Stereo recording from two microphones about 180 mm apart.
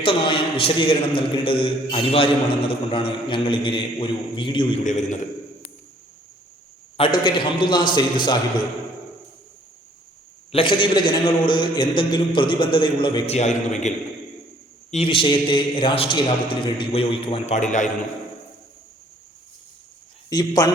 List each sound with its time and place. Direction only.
0.0 s a man's voice: 30° left (ahead or behind)
4.8 s a man's voice: 45° left (ahead or behind)
6.9 s a man's voice: 30° left (ahead or behind)
10.5 s a man's voice: 30° left (ahead or behind)
20.3 s a man's voice: 20° left (ahead or behind)